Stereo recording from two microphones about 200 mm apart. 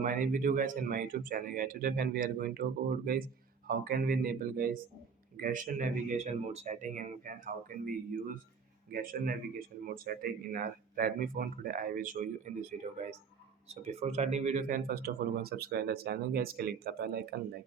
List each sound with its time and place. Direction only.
0.0 s speech: 40° right (ahead or behind)